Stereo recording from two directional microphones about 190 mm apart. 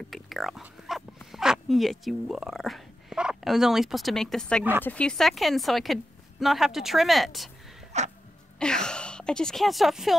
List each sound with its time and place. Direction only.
0.1 s speech: centre (ahead or behind)
7.9 s throat clearing: 35° right (ahead or behind)
8.5 s a woman's voice: 5° left (ahead or behind)